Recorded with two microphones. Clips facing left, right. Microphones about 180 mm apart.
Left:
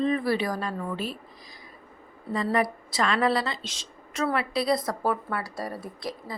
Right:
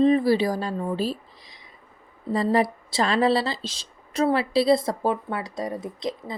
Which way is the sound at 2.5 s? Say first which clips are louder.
Right 4 dB; 25° right (ahead or behind).